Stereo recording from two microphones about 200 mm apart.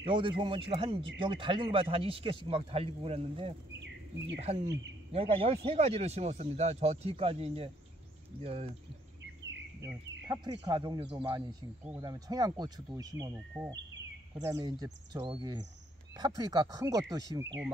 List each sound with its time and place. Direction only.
0.0 s speech: 25° right (ahead or behind)
9.8 s speech: 15° right (ahead or behind)
11.8 s speech: 10° right (ahead or behind)
12.1 s speech: 20° right (ahead or behind)